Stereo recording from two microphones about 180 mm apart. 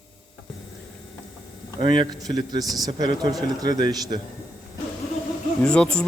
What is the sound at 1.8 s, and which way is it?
Speech, 25° right (ahead or behind).